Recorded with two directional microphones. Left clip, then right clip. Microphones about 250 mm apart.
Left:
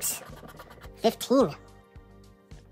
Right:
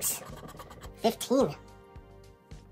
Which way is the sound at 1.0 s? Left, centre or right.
Centre.